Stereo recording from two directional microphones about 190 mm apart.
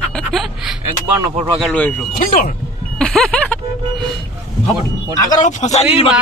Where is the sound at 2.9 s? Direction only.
5° left (ahead or behind).